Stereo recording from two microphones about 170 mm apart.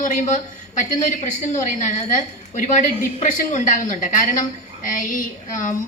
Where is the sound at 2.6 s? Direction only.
50° left (ahead or behind).